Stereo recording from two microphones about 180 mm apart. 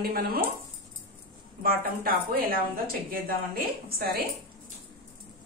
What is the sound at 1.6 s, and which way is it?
A woman's voice, 55° right (ahead or behind).